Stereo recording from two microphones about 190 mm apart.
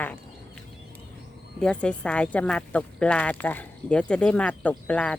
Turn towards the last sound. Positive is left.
turn(degrees=5)  # may be behind; listen again after turning